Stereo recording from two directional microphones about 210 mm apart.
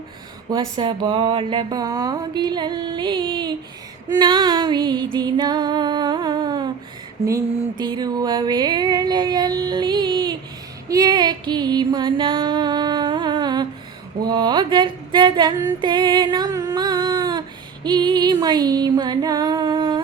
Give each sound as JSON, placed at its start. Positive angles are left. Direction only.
{"t": 0.5, "sound": "a sound", "side_deg": -25}
{"t": 14.2, "sound": "female singing", "side_deg": -20}
{"t": 17.8, "sound": "music", "side_deg": -20}